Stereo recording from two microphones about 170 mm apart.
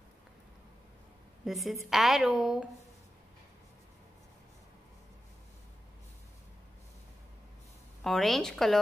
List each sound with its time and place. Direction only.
1.4 s a woman's voice: centre (ahead or behind)
8.0 s a woman's voice: centre (ahead or behind)